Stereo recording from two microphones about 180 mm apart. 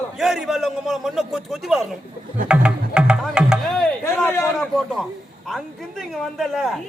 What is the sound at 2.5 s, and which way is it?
Music, 5° right (ahead or behind).